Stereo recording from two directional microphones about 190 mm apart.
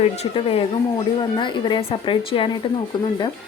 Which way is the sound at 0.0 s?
30° left (ahead or behind).